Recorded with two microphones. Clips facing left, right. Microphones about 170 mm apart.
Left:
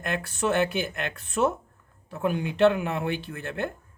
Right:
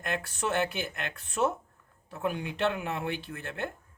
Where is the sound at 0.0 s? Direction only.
65° left (ahead or behind).